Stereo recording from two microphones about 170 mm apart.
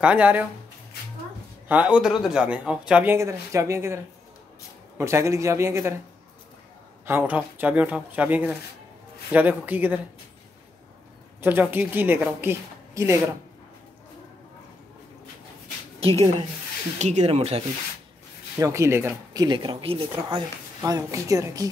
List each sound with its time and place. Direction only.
0.0 s speech: 10° right (ahead or behind)
1.7 s speech: 5° right (ahead or behind)
7.1 s speech: 10° right (ahead or behind)
11.4 s speech: 10° right (ahead or behind)
17.0 s speech: 40° right (ahead or behind)
18.6 s speech: 15° right (ahead or behind)